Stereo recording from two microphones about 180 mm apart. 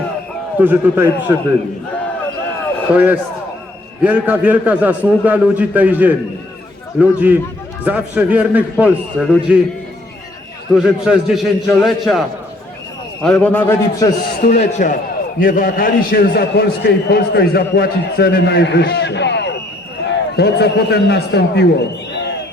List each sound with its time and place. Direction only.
0.6 s a man's voice: 10° right (ahead or behind)
2.9 s a man's voice: 10° right (ahead or behind)
10.8 s a man's voice: 5° right (ahead or behind)
13.2 s a man's voice: 5° left (ahead or behind)
14.4 s a man's voice: 45° left (ahead or behind); by 21.6 s 65° left (ahead or behind)